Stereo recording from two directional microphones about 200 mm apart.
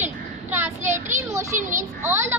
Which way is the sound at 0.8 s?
40° right (ahead or behind).